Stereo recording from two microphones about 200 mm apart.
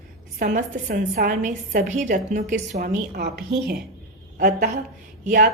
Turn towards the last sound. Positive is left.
turn(degrees=-40)  # may be behind; listen again after turning